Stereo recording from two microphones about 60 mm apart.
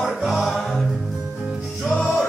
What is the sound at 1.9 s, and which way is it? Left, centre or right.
Music, centre.